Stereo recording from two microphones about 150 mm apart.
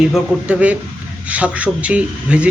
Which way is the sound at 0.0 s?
5° right (ahead or behind).